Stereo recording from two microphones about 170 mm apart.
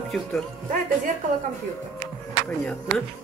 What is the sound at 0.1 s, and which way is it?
Speech, centre (ahead or behind).